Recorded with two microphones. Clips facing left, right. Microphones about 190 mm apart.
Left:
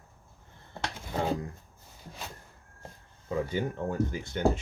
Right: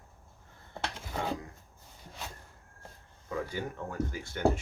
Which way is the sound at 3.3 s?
25° left (ahead or behind).